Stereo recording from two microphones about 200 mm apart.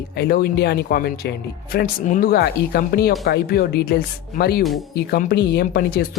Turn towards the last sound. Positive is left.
turn(degrees=50)  # may be behind; listen again after turning